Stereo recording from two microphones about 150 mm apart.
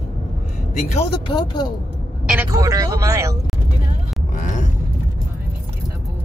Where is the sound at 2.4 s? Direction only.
25° right (ahead or behind).